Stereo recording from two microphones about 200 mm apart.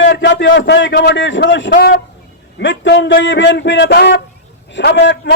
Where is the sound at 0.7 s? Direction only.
60° left (ahead or behind).